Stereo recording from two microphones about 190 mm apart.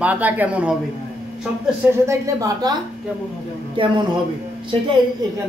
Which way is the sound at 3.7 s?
25° right (ahead or behind).